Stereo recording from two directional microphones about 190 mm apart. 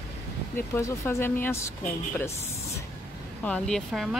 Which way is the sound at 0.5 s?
15° left (ahead or behind).